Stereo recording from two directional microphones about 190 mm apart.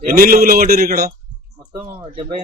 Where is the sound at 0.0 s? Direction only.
50° right (ahead or behind).